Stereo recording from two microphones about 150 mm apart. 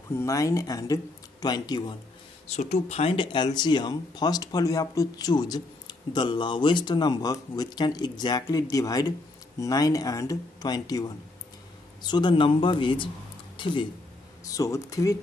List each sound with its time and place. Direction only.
0.1 s speech: 20° left (ahead or behind)
2.4 s speech: 45° left (ahead or behind)
14.4 s speech: 25° left (ahead or behind)